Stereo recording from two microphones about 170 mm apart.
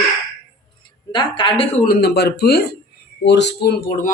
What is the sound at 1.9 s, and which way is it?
Speech, 75° left (ahead or behind).